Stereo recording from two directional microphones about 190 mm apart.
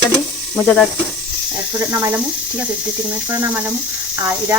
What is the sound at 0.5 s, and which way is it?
Speech, 5° left (ahead or behind).